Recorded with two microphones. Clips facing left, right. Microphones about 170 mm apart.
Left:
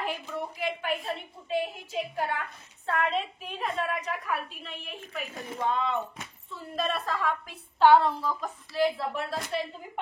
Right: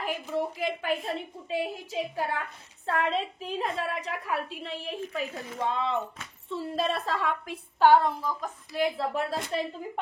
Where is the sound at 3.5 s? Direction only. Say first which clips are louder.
Right 1 dB; 30° right (ahead or behind).